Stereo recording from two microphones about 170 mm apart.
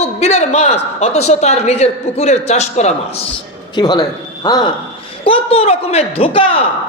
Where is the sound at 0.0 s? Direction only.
40° left (ahead or behind).